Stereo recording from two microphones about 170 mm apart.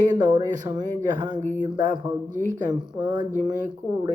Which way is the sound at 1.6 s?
25° right (ahead or behind).